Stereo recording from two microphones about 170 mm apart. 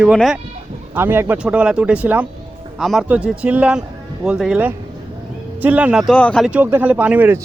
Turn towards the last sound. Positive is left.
turn(degrees=-10)  # may be behind; listen again after turning